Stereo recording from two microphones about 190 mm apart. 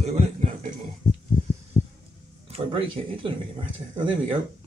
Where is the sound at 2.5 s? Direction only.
30° right (ahead or behind).